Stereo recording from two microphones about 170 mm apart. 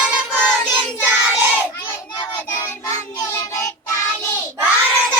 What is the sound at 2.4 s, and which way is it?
Child singing, 15° left (ahead or behind).